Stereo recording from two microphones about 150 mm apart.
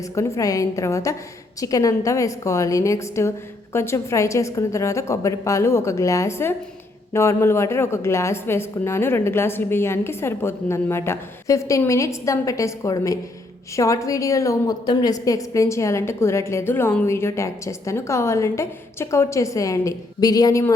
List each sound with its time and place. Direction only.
0.1 s a woman's voice: 20° left (ahead or behind)